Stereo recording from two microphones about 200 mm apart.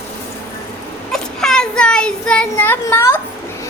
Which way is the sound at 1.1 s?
5° left (ahead or behind).